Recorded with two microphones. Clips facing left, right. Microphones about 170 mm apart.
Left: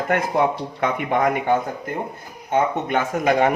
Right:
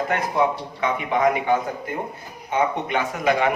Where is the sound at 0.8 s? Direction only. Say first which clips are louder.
Even; 55° left (ahead or behind).